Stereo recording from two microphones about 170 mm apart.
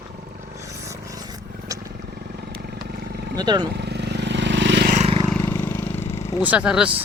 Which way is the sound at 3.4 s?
25° right (ahead or behind).